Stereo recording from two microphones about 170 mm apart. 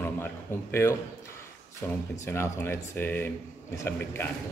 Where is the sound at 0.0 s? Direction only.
10° left (ahead or behind).